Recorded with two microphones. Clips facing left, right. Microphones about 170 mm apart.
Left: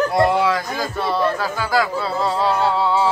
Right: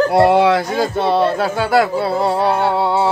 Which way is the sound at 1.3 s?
65° right (ahead or behind).